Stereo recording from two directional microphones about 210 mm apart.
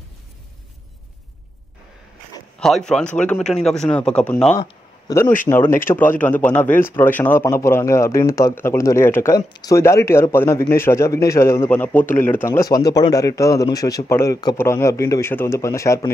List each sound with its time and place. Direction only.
2.6 s speech: centre (ahead or behind)
4.6 s a sound: 15° left (ahead or behind)
5.5 s a man's voice: 10° left (ahead or behind)